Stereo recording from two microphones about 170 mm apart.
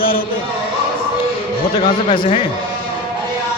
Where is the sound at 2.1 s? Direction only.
30° left (ahead or behind).